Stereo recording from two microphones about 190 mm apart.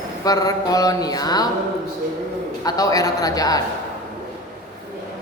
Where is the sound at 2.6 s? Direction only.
20° left (ahead or behind).